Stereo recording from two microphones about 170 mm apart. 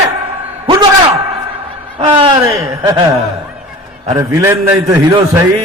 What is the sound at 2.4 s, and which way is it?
Speech, 20° right (ahead or behind).